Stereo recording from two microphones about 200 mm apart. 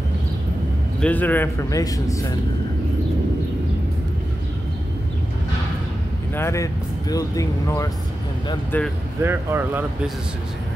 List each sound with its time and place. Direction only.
1.0 s speech: 10° left (ahead or behind)
6.3 s speech: 15° left (ahead or behind)
9.2 s speech: 10° right (ahead or behind)